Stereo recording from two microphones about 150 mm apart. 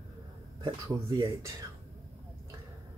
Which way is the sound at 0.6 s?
30° right (ahead or behind).